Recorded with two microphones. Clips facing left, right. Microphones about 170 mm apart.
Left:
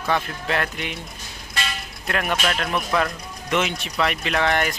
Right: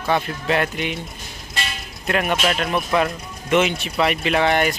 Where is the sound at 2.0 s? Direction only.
5° right (ahead or behind).